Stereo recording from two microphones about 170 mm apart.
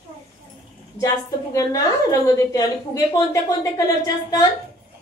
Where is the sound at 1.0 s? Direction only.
20° left (ahead or behind).